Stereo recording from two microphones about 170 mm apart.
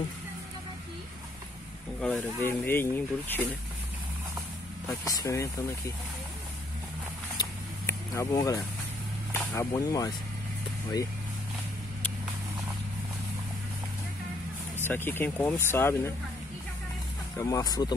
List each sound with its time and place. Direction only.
2.0 s speech: 5° left (ahead or behind)
4.8 s speech: 20° left (ahead or behind)
7.3 s vehicle: 20° left (ahead or behind)
9.3 s speech: 15° left (ahead or behind)
14.9 s speech: 10° left (ahead or behind)
17.4 s speech: 20° left (ahead or behind)